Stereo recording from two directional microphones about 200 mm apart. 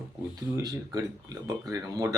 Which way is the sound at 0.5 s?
20° right (ahead or behind).